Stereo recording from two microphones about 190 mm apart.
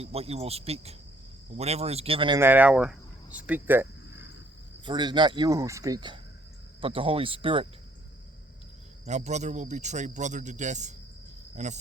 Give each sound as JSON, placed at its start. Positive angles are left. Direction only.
{"t": 0.0, "sound": "a man's voice", "side_deg": -30}
{"t": 2.4, "sound": "speech", "side_deg": -10}
{"t": 4.9, "sound": "speech", "side_deg": -25}
{"t": 9.0, "sound": "a man's voice", "side_deg": -35}